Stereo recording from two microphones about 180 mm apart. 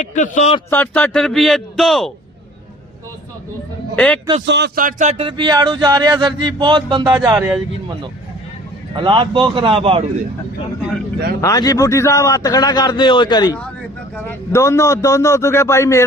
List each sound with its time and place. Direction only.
0.0 s a man's voice: 45° left (ahead or behind)
0.7 s a man's voice: 10° left (ahead or behind)
3.9 s a man's voice: 5° left (ahead or behind)
4.4 s speech: 70° right (ahead or behind)
4.8 s speech: 45° right (ahead or behind); by 7.1 s 25° right (ahead or behind)
7.3 s speech: 10° right (ahead or behind)
9.0 s speech: 25° right (ahead or behind)
11.3 s a man's voice: 20° left (ahead or behind)